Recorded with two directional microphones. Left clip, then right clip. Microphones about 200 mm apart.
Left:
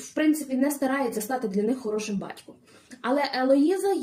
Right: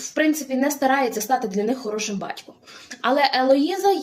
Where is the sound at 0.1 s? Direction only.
15° left (ahead or behind).